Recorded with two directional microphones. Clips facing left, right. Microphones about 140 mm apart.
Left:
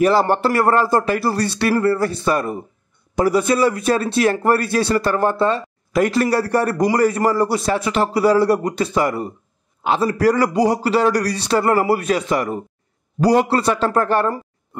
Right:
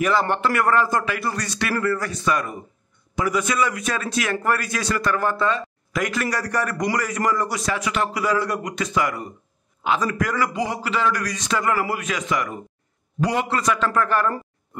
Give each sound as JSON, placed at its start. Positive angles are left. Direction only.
{"t": 0.0, "sound": "a man's voice", "side_deg": 35}